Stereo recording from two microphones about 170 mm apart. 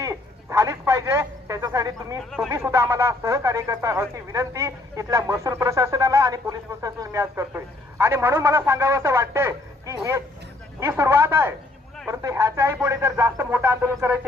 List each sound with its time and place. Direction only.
0.0 s telephone: 20° right (ahead or behind)
2.5 s speech: 15° right (ahead or behind)